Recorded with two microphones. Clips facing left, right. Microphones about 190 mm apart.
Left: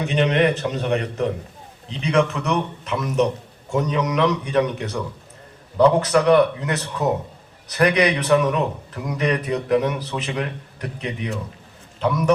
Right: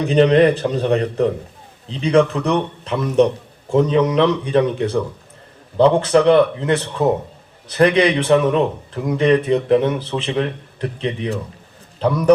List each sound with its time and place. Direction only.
0.0 s a man's voice: 35° right (ahead or behind)